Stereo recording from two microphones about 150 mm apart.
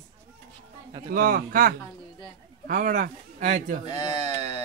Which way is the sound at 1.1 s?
75° right (ahead or behind).